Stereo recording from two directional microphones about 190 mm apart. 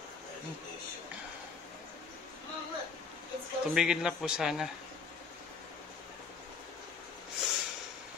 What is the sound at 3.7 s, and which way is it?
Speech, 5° right (ahead or behind).